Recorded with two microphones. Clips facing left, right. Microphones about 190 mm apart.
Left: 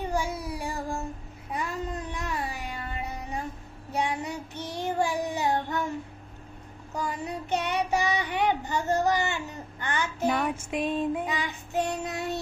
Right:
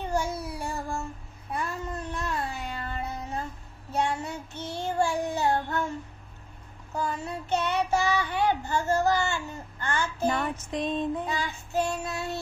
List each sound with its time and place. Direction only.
0.1 s child singing: 15° left (ahead or behind)
2.1 s music: 10° left (ahead or behind)
3.9 s child singing: 15° left (ahead or behind)
7.0 s child singing: 15° left (ahead or behind)